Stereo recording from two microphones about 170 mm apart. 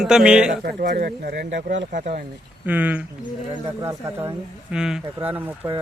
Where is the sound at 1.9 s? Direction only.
50° right (ahead or behind).